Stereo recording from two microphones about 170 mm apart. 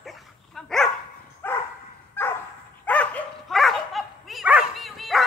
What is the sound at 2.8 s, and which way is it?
Dog, 10° left (ahead or behind).